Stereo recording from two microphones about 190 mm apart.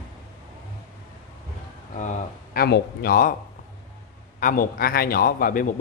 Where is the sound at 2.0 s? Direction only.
40° left (ahead or behind).